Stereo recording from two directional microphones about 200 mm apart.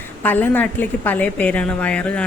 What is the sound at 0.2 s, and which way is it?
A woman's voice, 10° left (ahead or behind).